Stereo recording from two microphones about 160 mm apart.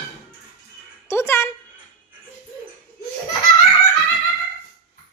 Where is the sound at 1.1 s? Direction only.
15° left (ahead or behind).